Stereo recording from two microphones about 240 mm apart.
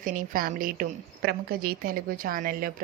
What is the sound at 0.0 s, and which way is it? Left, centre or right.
A woman's voice, right.